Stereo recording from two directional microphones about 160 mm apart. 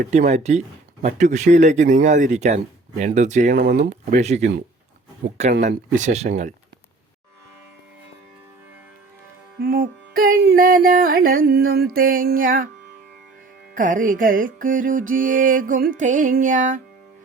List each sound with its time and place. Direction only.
0.1 s speech: 50° right (ahead or behind); by 3.8 s 65° right (ahead or behind)
3.8 s speech: 50° right (ahead or behind)
5.2 s speech: 90° right
5.6 s speech: 50° right (ahead or behind)
9.6 s music: 60° right (ahead or behind)
13.7 s music: 55° right (ahead or behind)
16.0 s speech: 50° right (ahead or behind)